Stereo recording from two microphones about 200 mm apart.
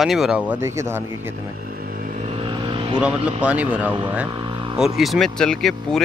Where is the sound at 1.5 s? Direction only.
50° right (ahead or behind).